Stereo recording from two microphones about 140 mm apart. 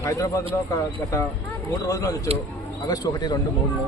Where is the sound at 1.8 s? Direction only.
25° left (ahead or behind).